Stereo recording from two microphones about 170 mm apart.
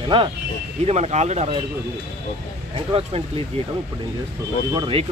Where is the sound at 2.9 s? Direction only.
35° right (ahead or behind).